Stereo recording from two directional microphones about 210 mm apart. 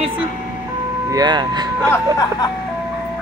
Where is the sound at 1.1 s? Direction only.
20° right (ahead or behind).